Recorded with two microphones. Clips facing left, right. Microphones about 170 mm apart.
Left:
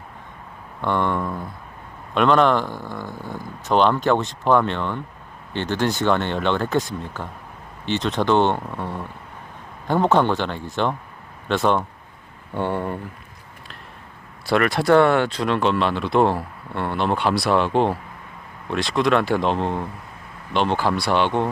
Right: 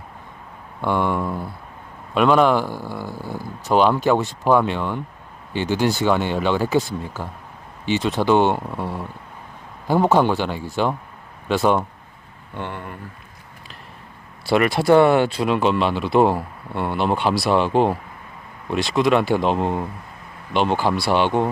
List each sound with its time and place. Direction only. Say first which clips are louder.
0.8 s speech: right 1 dB; 5° right (ahead or behind)
12.5 s speech: left 7 dB; 45° left (ahead or behind)
14.5 s speech: right 1 dB; 5° right (ahead or behind)